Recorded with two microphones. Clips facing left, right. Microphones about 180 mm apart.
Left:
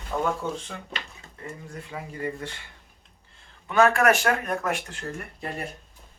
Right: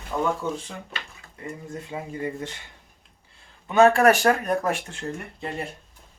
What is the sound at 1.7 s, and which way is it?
Speech, 20° right (ahead or behind).